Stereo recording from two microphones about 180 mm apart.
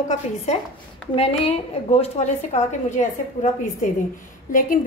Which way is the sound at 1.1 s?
35° left (ahead or behind).